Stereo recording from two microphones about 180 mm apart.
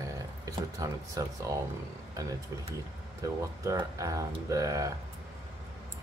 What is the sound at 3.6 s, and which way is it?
Speech, 20° right (ahead or behind).